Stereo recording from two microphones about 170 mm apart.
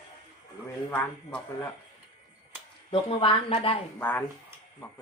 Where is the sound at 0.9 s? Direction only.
10° left (ahead or behind).